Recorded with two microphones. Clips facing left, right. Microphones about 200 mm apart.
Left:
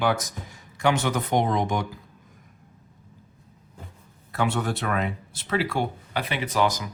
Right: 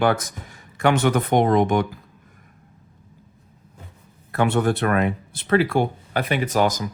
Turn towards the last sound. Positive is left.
turn(degrees=-45)  # may be behind; listen again after turning